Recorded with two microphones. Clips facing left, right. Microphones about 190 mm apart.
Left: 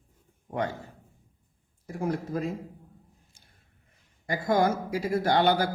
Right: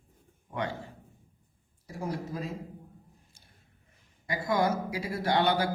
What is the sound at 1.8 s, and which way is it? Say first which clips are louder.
Speech: left 5 dB; 55° left (ahead or behind).